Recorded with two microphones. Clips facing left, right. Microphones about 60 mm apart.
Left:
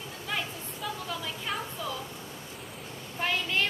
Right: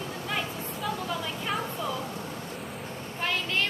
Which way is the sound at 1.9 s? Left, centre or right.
Right.